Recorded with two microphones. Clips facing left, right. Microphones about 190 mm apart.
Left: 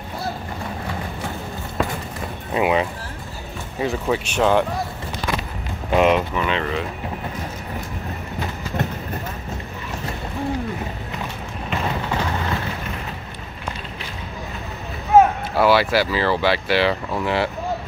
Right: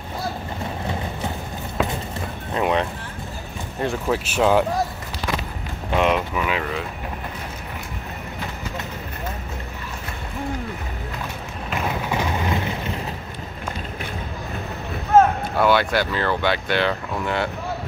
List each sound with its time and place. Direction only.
2.5 s speech: 5° left (ahead or behind)
5.9 s speech: centre (ahead or behind)
11.8 s a sound: 15° right (ahead or behind)
15.1 s speech: 5° left (ahead or behind)